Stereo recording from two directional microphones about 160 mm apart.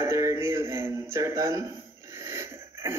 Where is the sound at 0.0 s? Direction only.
20° right (ahead or behind).